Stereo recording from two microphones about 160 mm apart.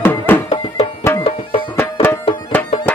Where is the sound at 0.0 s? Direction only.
15° left (ahead or behind).